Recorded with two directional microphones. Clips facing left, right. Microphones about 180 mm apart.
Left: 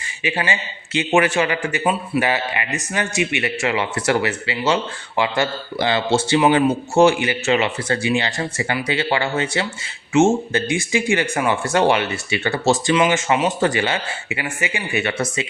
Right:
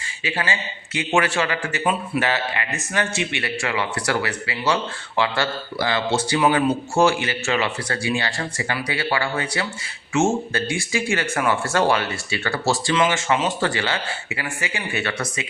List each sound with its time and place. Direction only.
0.2 s speech: 15° left (ahead or behind)